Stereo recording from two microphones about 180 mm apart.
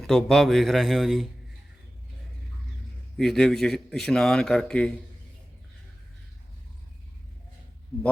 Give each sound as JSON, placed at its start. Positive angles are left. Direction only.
{"t": 0.0, "sound": "a man's voice", "side_deg": 0}
{"t": 3.2, "sound": "a man's voice", "side_deg": 5}